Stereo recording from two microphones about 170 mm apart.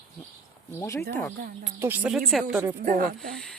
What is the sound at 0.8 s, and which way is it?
Speech, 20° left (ahead or behind).